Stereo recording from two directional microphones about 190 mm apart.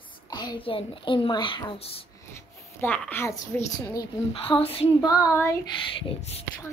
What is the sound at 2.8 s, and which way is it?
A child's voice, 10° left (ahead or behind).